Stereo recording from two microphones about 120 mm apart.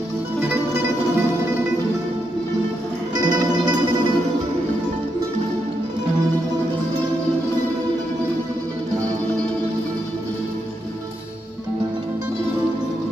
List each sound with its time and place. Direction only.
3.2 s music: 35° right (ahead or behind)